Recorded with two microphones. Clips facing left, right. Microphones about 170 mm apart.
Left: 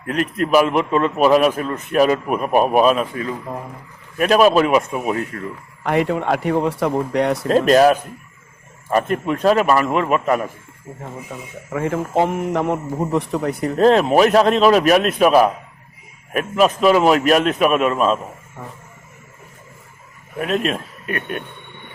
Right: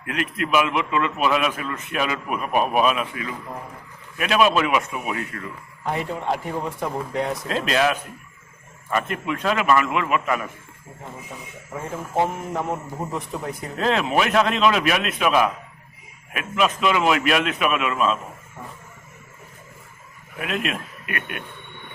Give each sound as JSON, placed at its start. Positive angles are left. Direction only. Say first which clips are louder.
{"t": 0.0, "sound": "a man's voice", "louder": "left 6 dB", "side_deg": 40}
{"t": 5.8, "sound": "a man's voice", "louder": "left 8 dB", "side_deg": 75}
{"t": 7.4, "sound": "a man's voice", "louder": "left 10 dB", "side_deg": 45}
{"t": 11.7, "sound": "a man's voice", "louder": "left 8 dB", "side_deg": 75}
{"t": 13.7, "sound": "a man's voice", "louder": "left 8 dB", "side_deg": 40}
{"t": 20.4, "sound": "a man's voice", "louder": "left 6 dB", "side_deg": 40}